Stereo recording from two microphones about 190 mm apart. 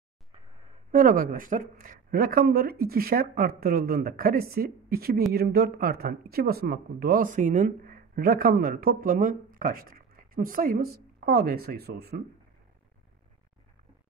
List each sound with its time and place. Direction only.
0.9 s speech: 45° right (ahead or behind)